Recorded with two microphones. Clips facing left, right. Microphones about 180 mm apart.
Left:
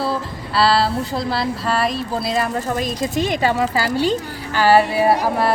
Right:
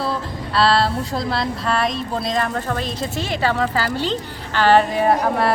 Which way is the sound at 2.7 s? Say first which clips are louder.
Left 4 dB; 10° left (ahead or behind).